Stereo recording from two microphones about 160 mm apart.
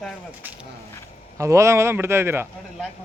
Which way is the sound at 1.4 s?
20° right (ahead or behind).